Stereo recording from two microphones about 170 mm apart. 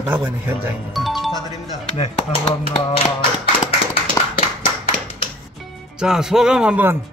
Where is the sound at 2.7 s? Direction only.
35° left (ahead or behind).